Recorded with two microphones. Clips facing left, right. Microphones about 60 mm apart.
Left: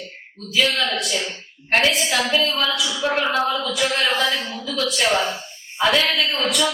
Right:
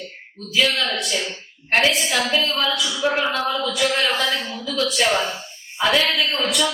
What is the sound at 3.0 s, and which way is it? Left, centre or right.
Speech, centre.